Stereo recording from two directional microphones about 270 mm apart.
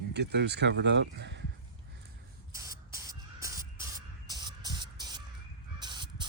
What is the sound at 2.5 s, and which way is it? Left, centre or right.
Spray, centre.